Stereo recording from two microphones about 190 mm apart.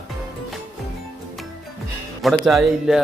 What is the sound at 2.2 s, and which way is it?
Speech, centre (ahead or behind).